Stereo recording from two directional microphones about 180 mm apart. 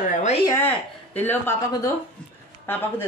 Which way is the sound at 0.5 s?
10° left (ahead or behind).